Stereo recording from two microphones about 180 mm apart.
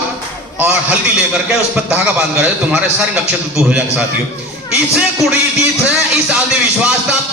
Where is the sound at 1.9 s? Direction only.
5° right (ahead or behind).